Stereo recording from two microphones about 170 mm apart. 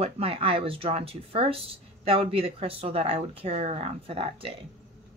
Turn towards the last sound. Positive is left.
turn(degrees=-30)  # may be behind; listen again after turning